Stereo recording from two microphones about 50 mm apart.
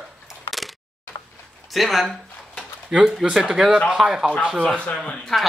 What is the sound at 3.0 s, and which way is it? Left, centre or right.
Speech, centre.